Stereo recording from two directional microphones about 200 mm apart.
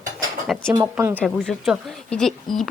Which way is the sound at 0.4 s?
Centre (ahead or behind).